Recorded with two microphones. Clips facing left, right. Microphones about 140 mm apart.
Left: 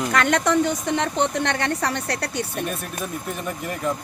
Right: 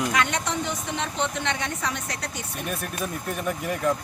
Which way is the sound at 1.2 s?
35° left (ahead or behind).